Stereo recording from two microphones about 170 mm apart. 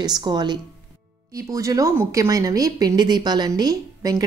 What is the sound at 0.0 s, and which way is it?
A woman's voice, 25° right (ahead or behind).